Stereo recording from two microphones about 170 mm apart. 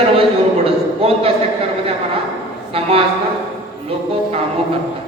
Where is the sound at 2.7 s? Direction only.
35° right (ahead or behind).